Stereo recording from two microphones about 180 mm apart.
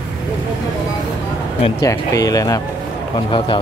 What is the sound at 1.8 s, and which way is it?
Speech, 20° left (ahead or behind).